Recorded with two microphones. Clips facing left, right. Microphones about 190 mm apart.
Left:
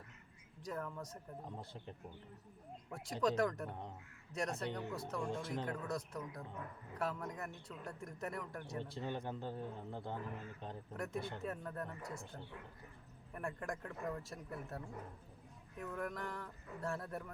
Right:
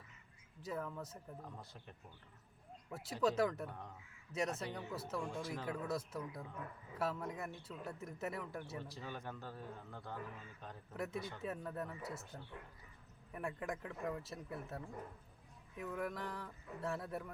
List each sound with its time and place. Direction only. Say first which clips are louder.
0.6 s speech: even; 5° right (ahead or behind)
1.5 s speech: left 5 dB; 25° left (ahead or behind)
2.9 s speech: even; 5° right (ahead or behind)
3.7 s speech: left 3 dB; 25° left (ahead or behind)
4.4 s speech: even; 5° right (ahead or behind)
8.8 s speech: left 5 dB; 25° left (ahead or behind)
10.9 s speech: even; 5° right (ahead or behind)